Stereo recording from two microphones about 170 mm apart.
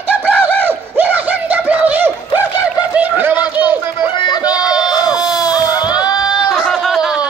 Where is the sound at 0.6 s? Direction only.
10° right (ahead or behind).